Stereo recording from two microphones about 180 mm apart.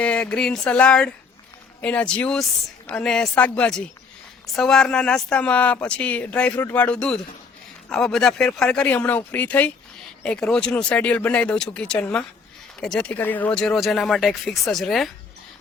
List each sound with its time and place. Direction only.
0.0 s speech: 5° left (ahead or behind)